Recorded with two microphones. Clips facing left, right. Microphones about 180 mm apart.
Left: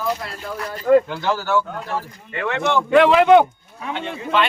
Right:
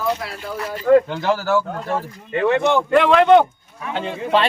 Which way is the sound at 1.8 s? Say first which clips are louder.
Right 3 dB; 25° right (ahead or behind).